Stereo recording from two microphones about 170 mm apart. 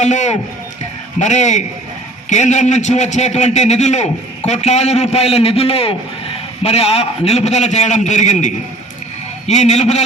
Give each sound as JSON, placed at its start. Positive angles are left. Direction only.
{"t": 0.0, "sound": "a man's voice", "side_deg": 45}